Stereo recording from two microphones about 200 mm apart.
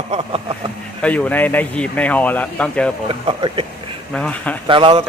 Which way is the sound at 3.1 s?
25° right (ahead or behind).